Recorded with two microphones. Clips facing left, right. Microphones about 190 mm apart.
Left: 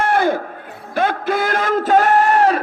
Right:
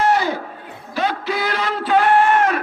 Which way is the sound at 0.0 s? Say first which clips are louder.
Left 1 dB; 55° left (ahead or behind).